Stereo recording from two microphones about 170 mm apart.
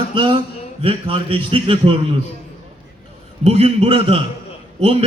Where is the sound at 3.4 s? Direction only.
35° right (ahead or behind).